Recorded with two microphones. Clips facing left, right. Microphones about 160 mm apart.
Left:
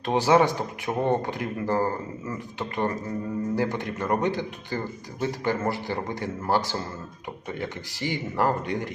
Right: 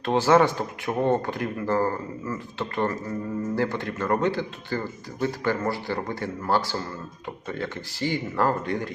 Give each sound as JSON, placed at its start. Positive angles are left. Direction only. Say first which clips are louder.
{"t": 0.0, "sound": "speech", "louder": "right 1 dB", "side_deg": 15}